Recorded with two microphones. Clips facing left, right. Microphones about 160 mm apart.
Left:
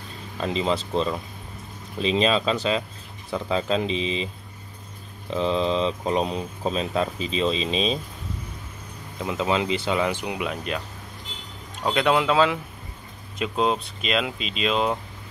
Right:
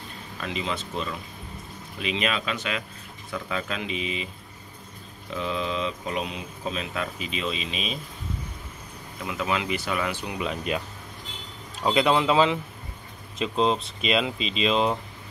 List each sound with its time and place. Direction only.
0.4 s speech: 30° left (ahead or behind)
5.3 s speech: 30° left (ahead or behind)
9.2 s speech: 25° left (ahead or behind)
10.4 s speech: centre (ahead or behind)
11.8 s speech: 5° right (ahead or behind)